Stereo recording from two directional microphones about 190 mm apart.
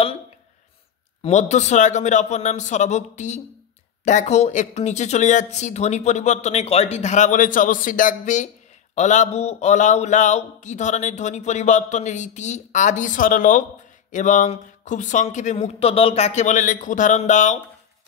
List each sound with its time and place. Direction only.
1.2 s speech: 35° left (ahead or behind)